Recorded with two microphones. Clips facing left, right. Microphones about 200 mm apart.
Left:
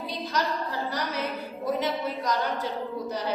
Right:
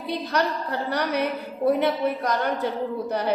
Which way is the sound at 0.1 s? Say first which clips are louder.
Right 6 dB; 60° right (ahead or behind).